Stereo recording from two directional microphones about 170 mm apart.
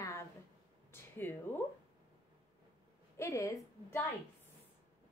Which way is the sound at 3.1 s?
20° left (ahead or behind).